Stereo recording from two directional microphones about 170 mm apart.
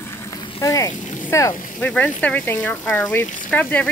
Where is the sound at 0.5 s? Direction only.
20° left (ahead or behind).